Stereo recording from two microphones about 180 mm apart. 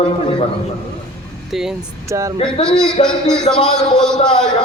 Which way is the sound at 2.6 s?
5° left (ahead or behind).